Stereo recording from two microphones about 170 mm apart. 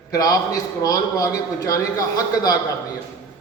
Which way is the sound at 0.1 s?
20° left (ahead or behind).